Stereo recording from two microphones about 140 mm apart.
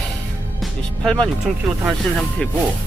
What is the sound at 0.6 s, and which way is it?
Speech, 5° left (ahead or behind).